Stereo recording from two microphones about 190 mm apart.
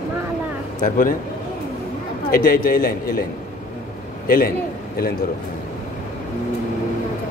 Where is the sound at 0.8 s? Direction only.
45° left (ahead or behind).